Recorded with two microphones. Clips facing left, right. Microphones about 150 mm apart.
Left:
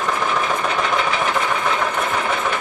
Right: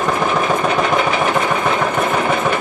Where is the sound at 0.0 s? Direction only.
50° right (ahead or behind).